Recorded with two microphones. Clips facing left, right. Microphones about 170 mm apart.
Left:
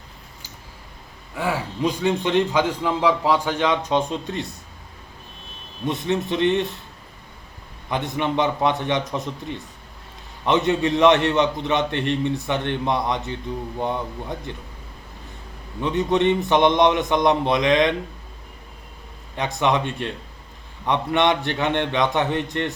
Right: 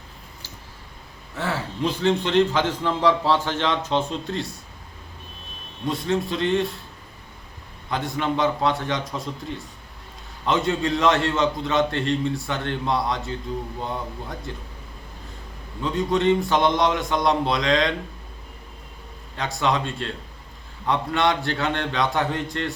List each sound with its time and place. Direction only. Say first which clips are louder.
1.4 s a man's voice: left 2 dB; 10° left (ahead or behind)
5.9 s a man's voice: left 1 dB; 20° left (ahead or behind)
7.9 s a man's voice: left 1 dB; 20° left (ahead or behind)
10.4 s a man's voice: left 3 dB; 20° left (ahead or behind)
15.8 s a man's voice: left 2 dB; 20° left (ahead or behind)
19.4 s a man's voice: left 2 dB; 20° left (ahead or behind)